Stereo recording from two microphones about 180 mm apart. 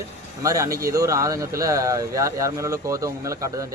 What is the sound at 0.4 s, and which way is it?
Speech, 20° right (ahead or behind).